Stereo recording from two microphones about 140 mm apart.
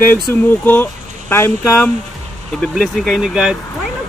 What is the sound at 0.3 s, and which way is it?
Speech, 15° left (ahead or behind).